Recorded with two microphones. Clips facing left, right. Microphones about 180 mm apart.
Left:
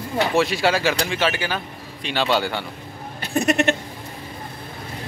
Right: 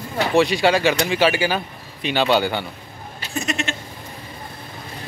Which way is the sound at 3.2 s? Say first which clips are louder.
Left 7 dB; 60° left (ahead or behind).